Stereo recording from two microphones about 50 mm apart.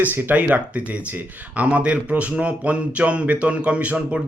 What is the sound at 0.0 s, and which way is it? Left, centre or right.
Speech, right.